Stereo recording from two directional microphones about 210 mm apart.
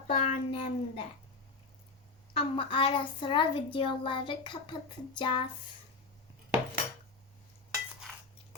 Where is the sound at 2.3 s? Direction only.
25° left (ahead or behind).